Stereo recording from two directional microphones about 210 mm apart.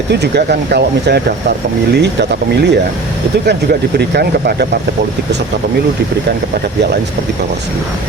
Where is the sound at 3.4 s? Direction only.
50° right (ahead or behind).